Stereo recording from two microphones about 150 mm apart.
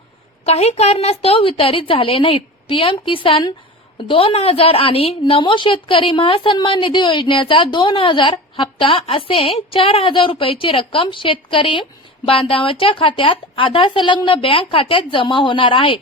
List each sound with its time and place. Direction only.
0.4 s a woman's voice: 45° left (ahead or behind)